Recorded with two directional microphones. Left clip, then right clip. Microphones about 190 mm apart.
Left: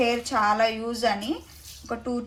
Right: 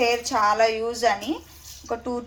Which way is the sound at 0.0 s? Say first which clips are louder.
Right 2 dB; 25° right (ahead or behind).